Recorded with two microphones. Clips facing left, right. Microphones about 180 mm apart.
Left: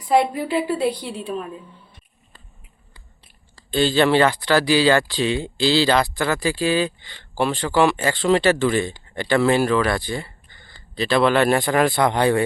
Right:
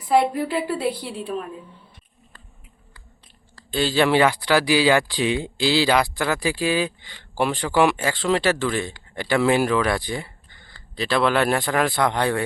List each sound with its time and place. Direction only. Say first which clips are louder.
0.1 s speech: left 1 dB; centre (ahead or behind)
3.7 s speech: left 2 dB; 5° right (ahead or behind)
10.9 s speech: left 3 dB; centre (ahead or behind)